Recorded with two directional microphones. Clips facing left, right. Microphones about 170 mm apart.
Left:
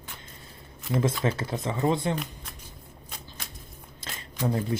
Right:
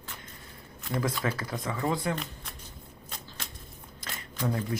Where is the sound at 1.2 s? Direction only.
25° left (ahead or behind).